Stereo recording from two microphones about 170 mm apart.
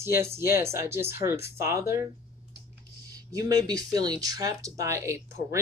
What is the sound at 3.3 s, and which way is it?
Speech, 20° right (ahead or behind).